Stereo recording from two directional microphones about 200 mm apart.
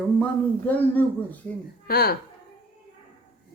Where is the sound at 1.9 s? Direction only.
50° left (ahead or behind).